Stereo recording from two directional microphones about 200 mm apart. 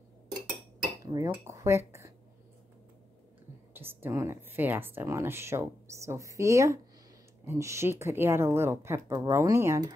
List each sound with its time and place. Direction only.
1.1 s cutlery: 20° right (ahead or behind)
1.5 s speech: 15° right (ahead or behind)
3.7 s speech: 10° right (ahead or behind)